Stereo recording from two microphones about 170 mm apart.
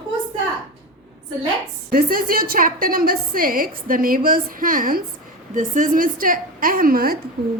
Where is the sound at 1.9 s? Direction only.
60° right (ahead or behind).